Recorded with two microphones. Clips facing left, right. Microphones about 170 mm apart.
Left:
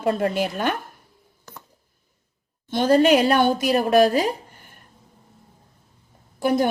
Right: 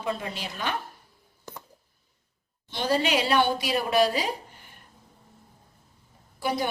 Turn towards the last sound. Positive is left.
turn(degrees=50)  # may be behind; listen again after turning